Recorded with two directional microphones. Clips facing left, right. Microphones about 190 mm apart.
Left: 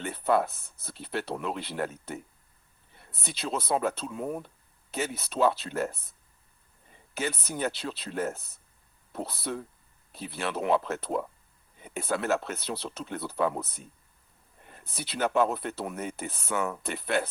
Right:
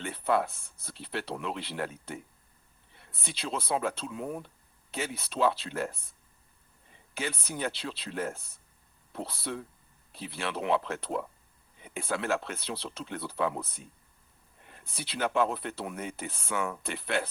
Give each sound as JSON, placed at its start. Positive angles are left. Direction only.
{"t": 0.0, "sound": "speech", "side_deg": 45}
{"t": 7.1, "sound": "speech", "side_deg": 45}